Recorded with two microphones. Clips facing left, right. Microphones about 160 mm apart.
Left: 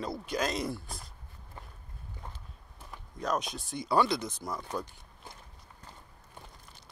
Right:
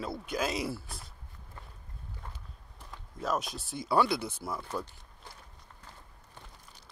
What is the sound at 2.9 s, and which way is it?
Speech, centre (ahead or behind).